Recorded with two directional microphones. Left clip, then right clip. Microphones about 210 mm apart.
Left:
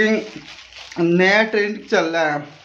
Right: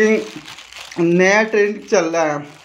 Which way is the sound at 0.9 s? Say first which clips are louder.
Right 1 dB; 15° right (ahead or behind).